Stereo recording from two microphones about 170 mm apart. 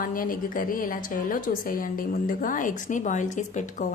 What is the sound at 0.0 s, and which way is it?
A woman's voice, 55° left (ahead or behind).